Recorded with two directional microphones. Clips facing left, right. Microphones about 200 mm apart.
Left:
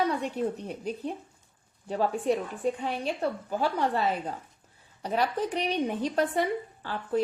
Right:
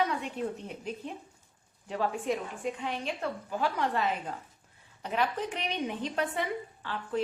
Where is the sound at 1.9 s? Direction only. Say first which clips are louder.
Left 4 dB; 35° left (ahead or behind).